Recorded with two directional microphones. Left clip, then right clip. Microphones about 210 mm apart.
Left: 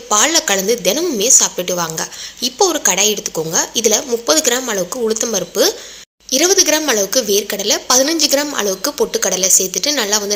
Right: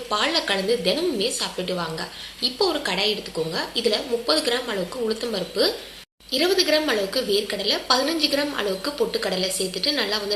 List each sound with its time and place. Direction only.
0.1 s a woman's voice: 55° left (ahead or behind)